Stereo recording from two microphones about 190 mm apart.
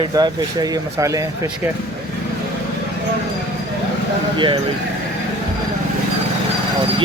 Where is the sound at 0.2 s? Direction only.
20° right (ahead or behind).